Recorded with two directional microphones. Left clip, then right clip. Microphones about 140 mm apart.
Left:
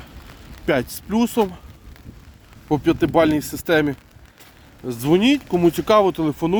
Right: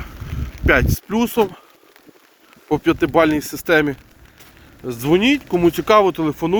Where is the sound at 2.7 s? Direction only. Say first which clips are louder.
Right 2 dB; 35° left (ahead or behind).